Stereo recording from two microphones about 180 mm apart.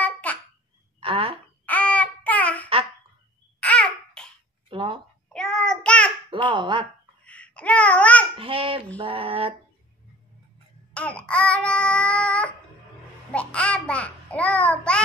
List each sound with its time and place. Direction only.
0.0 s babbling: 10° left (ahead or behind)
1.0 s a sound: 30° right (ahead or behind)
1.7 s a sound: 10° left (ahead or behind)
3.6 s babbling: 5° left (ahead or behind)
4.6 s a sound: 30° right (ahead or behind)
5.3 s child singing: 5° left (ahead or behind)
6.3 s speech: 25° right (ahead or behind)
7.2 s babbling: 5° left (ahead or behind)
8.4 s music: 30° right (ahead or behind)
10.9 s child singing: 5° left (ahead or behind)
13.3 s a child's voice: 5° left (ahead or behind)